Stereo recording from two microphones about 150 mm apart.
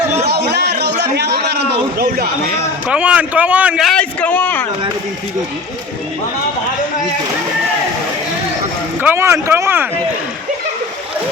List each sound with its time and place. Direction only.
0.3 s a sound: 90° right
2.8 s a man's voice: 10° right (ahead or behind)
3.8 s a man's voice: 10° left (ahead or behind)
9.0 s a man's voice: 15° right (ahead or behind)